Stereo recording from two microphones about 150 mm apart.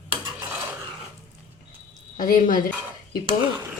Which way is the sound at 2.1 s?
65° left (ahead or behind).